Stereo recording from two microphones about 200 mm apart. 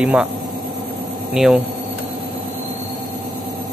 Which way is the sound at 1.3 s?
5° right (ahead or behind).